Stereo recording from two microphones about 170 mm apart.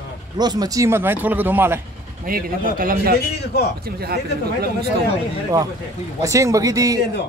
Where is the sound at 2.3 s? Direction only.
55° right (ahead or behind).